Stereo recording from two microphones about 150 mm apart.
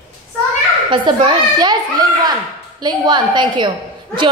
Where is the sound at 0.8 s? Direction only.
35° right (ahead or behind).